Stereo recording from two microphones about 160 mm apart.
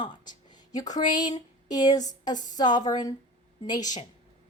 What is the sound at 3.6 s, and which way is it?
Speech, 25° left (ahead or behind).